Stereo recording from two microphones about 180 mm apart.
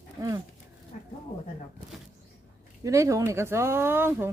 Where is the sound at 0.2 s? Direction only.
20° right (ahead or behind).